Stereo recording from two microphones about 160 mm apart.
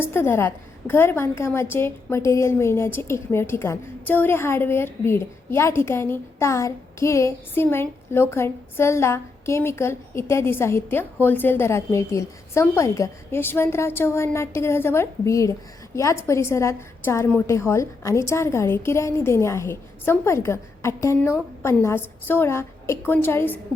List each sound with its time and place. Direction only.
0.0 s a woman's voice: 15° left (ahead or behind)